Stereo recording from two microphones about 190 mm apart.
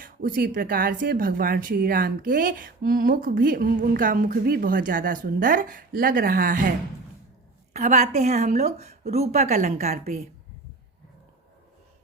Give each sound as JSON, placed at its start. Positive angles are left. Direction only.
{"t": 0.0, "sound": "a woman's voice", "side_deg": -45}